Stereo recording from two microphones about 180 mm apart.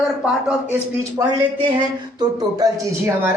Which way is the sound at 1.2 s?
20° right (ahead or behind).